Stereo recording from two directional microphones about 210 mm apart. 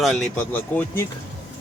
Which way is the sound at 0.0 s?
Centre (ahead or behind).